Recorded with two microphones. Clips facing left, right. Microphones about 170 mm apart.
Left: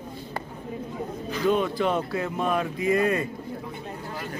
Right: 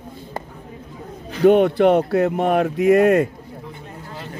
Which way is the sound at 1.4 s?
65° right (ahead or behind).